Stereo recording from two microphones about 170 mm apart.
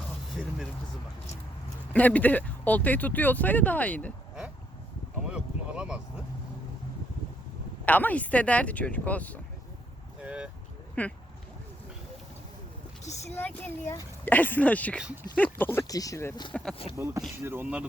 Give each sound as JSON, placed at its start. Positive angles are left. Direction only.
{"t": 0.4, "sound": "speech", "side_deg": 0}
{"t": 1.9, "sound": "speech", "side_deg": 10}
{"t": 5.3, "sound": "a sound", "side_deg": -5}
{"t": 7.9, "sound": "speech", "side_deg": 10}
{"t": 10.2, "sound": "speech", "side_deg": -5}
{"t": 11.0, "sound": "speech", "side_deg": 10}
{"t": 13.3, "sound": "speech", "side_deg": 10}
{"t": 14.9, "sound": "speech", "side_deg": -5}
{"t": 15.5, "sound": "speech", "side_deg": 10}
{"t": 16.5, "sound": "speech", "side_deg": 5}
{"t": 17.4, "sound": "speech", "side_deg": -10}